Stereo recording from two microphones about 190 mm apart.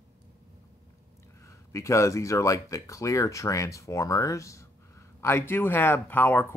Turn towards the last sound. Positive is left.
turn(degrees=10)  # may be behind; listen again after turning